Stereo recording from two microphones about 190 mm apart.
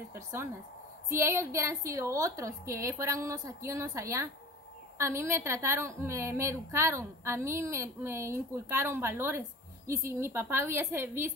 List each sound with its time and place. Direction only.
0.1 s a woman's voice: 15° right (ahead or behind)